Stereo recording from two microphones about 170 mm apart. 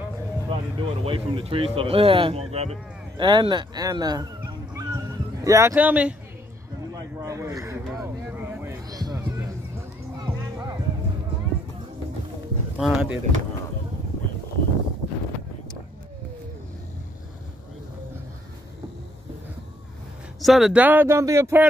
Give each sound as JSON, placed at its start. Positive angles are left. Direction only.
{"t": 0.5, "sound": "speech", "side_deg": -30}
{"t": 6.9, "sound": "a sound", "side_deg": -20}
{"t": 8.8, "sound": "music", "side_deg": -20}
{"t": 12.7, "sound": "speech", "side_deg": -5}
{"t": 20.3, "sound": "speech", "side_deg": 0}